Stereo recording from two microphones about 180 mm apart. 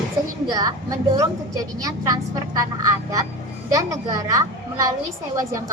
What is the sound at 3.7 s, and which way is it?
A woman's voice, 20° right (ahead or behind).